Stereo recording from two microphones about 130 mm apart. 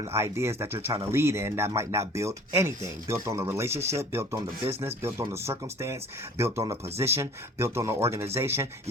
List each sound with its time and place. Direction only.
0.0 s speech: 20° right (ahead or behind)